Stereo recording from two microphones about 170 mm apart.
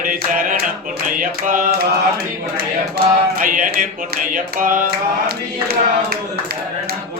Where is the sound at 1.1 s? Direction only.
50° right (ahead or behind).